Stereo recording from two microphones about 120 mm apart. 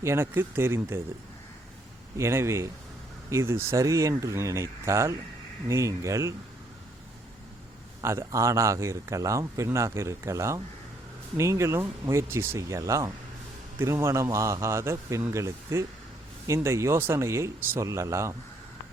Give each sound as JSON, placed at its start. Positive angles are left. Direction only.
{"t": 0.0, "sound": "a man's voice", "side_deg": -20}
{"t": 2.1, "sound": "a man's voice", "side_deg": -25}
{"t": 8.0, "sound": "a man's voice", "side_deg": -25}